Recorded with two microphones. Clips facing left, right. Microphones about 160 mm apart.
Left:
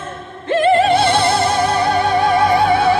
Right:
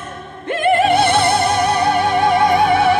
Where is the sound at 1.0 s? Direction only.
25° left (ahead or behind).